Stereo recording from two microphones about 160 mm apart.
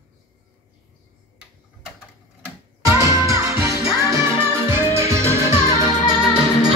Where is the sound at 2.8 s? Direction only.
20° right (ahead or behind).